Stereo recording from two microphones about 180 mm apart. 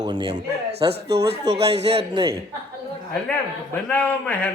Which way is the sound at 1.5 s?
35° right (ahead or behind).